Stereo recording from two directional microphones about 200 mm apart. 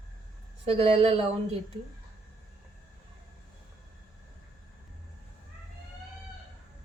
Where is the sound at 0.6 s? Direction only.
30° right (ahead or behind).